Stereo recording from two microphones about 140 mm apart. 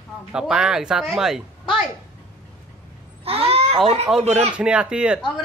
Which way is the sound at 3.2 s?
45° right (ahead or behind).